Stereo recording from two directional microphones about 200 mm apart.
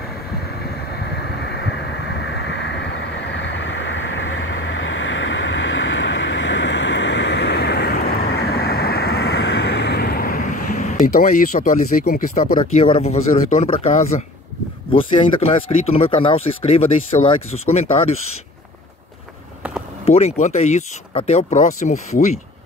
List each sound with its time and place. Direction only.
0.9 s vehicle: 60° left (ahead or behind)
12.5 s speech: 25° left (ahead or behind)
20.1 s speech: 30° left (ahead or behind)